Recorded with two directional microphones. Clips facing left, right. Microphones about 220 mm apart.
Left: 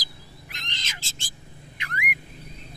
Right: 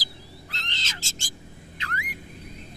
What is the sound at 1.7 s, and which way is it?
Car alarm, 15° left (ahead or behind).